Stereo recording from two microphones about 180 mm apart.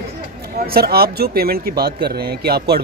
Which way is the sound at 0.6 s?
60° right (ahead or behind).